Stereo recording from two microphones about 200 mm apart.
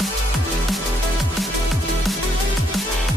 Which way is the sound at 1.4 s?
Centre (ahead or behind).